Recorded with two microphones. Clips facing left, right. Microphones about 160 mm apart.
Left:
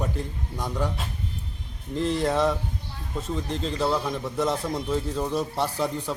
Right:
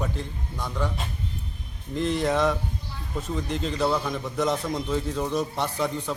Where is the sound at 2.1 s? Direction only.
Centre (ahead or behind).